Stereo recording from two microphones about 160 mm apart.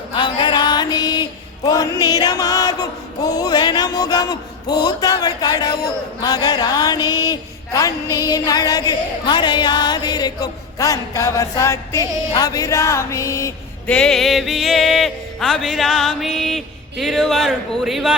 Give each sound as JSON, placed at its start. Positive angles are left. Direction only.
{"t": 0.1, "sound": "chant", "side_deg": 30}
{"t": 13.9, "sound": "music", "side_deg": 5}